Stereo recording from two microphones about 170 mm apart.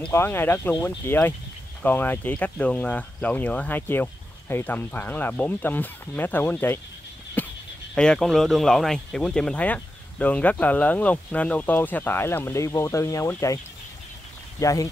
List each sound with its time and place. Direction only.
0.0 s speech: 15° left (ahead or behind)
7.4 s frog: 10° left (ahead or behind)
7.9 s speech: 5° left (ahead or behind)
14.6 s speech: 20° left (ahead or behind)